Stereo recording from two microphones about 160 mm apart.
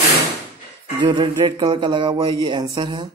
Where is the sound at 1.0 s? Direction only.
30° right (ahead or behind).